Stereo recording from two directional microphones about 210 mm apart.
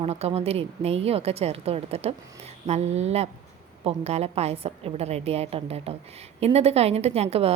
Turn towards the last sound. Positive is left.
turn(degrees=-30)  # may be behind; listen again after turning